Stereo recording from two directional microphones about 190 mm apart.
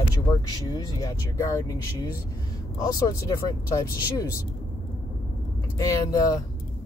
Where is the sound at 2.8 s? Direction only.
20° left (ahead or behind).